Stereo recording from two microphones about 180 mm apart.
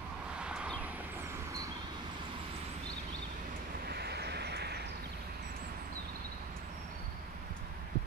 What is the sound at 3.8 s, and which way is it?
Vehicle, 65° right (ahead or behind).